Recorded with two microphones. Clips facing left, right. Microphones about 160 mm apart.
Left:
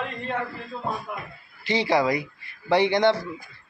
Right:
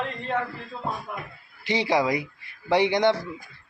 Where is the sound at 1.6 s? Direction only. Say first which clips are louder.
Left 1 dB; 15° right (ahead or behind).